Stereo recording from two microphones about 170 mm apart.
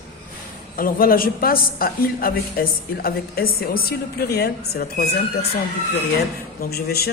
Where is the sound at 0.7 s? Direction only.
60° left (ahead or behind).